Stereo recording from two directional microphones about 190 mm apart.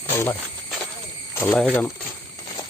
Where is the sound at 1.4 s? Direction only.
5° left (ahead or behind).